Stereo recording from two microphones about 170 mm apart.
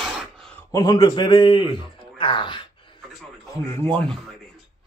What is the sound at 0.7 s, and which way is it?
Speech, 20° left (ahead or behind).